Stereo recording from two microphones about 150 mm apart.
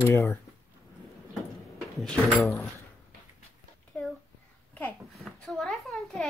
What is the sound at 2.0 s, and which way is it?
Speech, centre (ahead or behind).